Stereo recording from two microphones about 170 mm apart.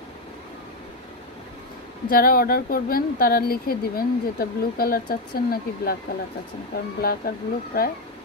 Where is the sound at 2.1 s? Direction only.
60° left (ahead or behind).